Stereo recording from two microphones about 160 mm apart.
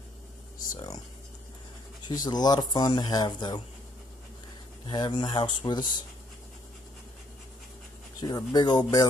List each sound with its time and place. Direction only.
0.7 s speech: 25° left (ahead or behind)
2.0 s speech: 25° left (ahead or behind)
4.8 s speech: 25° left (ahead or behind)
8.2 s speech: 25° left (ahead or behind)